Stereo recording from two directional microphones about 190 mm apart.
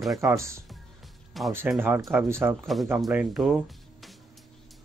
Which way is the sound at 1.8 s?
10° right (ahead or behind).